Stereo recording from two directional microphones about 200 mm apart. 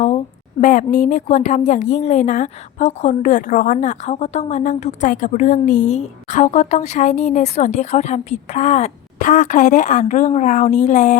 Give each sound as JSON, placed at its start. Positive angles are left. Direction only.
{"t": 0.6, "sound": "a woman's voice", "side_deg": 40}